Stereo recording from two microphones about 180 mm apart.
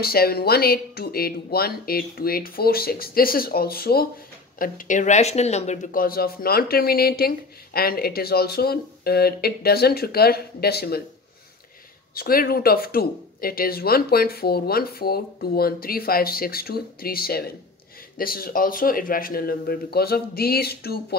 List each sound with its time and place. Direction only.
0.0 s speech: 60° left (ahead or behind)
4.6 s speech: 50° left (ahead or behind)
12.1 s speech: 55° left (ahead or behind)